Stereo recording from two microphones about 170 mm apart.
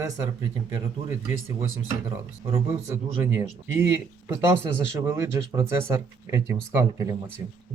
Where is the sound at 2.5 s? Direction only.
15° right (ahead or behind).